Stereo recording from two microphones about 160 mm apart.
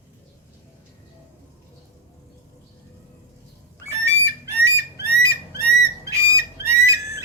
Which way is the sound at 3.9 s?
15° right (ahead or behind).